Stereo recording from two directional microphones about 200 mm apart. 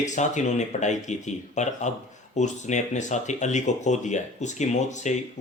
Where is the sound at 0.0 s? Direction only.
35° left (ahead or behind).